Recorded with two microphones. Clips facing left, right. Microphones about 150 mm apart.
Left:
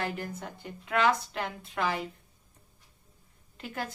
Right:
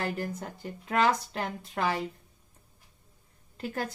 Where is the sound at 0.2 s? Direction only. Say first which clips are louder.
Right 3 dB; 35° right (ahead or behind).